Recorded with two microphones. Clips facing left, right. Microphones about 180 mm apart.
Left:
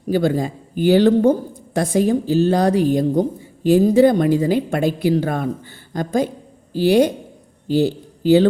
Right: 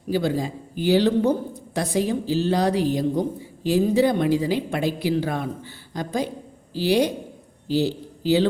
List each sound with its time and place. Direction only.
0.1 s speech: 55° left (ahead or behind)